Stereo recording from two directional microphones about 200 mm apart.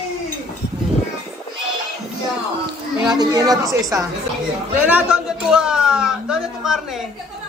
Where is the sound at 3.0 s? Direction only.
20° right (ahead or behind).